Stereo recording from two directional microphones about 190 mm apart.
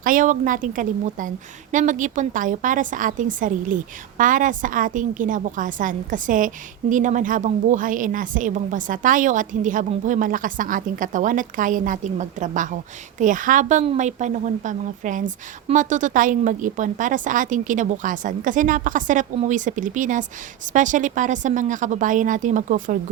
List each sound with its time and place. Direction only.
0.0 s a woman's voice: 45° right (ahead or behind)